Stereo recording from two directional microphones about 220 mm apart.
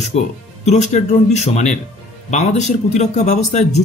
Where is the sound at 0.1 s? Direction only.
30° left (ahead or behind).